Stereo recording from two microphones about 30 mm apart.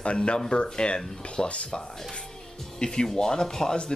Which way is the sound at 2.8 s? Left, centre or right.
Left.